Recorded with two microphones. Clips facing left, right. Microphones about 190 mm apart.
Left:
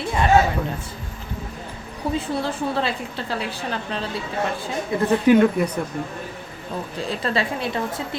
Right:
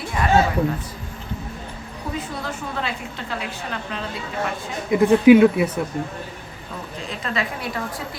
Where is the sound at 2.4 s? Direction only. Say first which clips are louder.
Left 5 dB; 30° left (ahead or behind).